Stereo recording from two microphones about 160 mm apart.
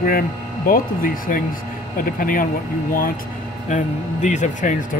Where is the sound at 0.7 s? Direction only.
60° left (ahead or behind).